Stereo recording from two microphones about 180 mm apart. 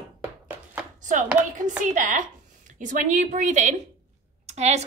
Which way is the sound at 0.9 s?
45° right (ahead or behind).